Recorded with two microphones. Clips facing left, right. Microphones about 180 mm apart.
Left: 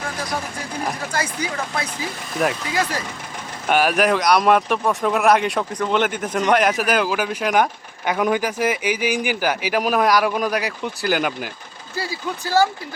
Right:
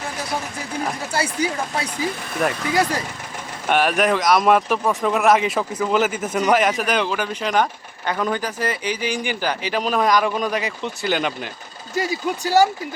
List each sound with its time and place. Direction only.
2.4 s speech: 5° left (ahead or behind)
3.7 s speech: centre (ahead or behind)
11.9 s speech: 20° right (ahead or behind)